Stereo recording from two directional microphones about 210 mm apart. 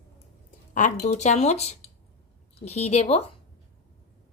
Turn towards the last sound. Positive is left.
turn(degrees=30)  # may be behind; listen again after turning